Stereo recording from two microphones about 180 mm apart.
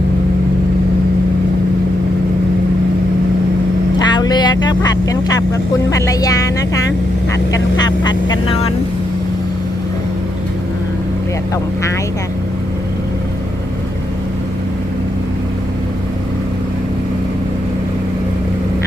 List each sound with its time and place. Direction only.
3.9 s vehicle: 25° left (ahead or behind)
4.6 s speech: 20° left (ahead or behind)
5.9 s music: 20° left (ahead or behind)
7.8 s vehicle: 20° left (ahead or behind)